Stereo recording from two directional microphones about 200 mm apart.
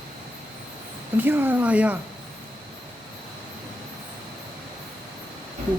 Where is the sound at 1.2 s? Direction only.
10° right (ahead or behind).